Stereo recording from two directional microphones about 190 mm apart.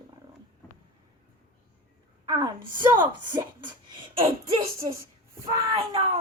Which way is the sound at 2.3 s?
20° right (ahead or behind).